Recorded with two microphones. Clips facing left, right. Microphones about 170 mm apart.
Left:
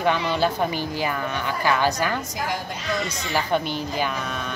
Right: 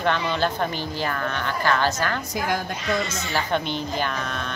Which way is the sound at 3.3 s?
10° left (ahead or behind).